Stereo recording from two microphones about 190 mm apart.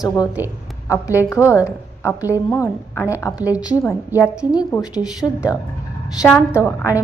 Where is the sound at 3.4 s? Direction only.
5° right (ahead or behind).